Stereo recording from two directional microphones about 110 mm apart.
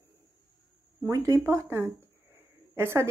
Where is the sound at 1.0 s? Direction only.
30° right (ahead or behind).